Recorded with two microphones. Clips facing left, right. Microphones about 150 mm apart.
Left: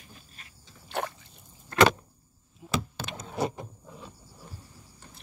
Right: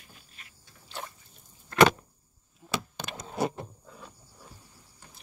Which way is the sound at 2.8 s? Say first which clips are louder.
Left 4 dB; centre (ahead or behind).